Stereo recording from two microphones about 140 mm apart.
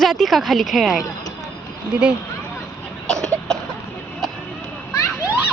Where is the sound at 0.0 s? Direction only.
Centre (ahead or behind).